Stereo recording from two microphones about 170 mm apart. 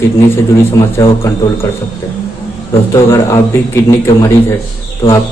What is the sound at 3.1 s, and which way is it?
A man's voice, 15° left (ahead or behind).